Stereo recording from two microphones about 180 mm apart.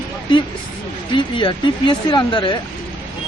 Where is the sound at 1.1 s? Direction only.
25° left (ahead or behind).